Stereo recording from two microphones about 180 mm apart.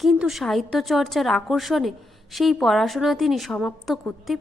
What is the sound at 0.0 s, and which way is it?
A woman's voice, centre (ahead or behind).